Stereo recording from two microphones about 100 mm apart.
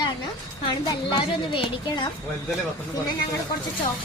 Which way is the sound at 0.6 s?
50° left (ahead or behind).